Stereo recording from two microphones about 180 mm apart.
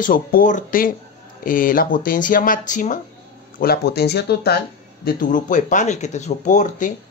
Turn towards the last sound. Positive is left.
turn(degrees=45)  # may be behind; listen again after turning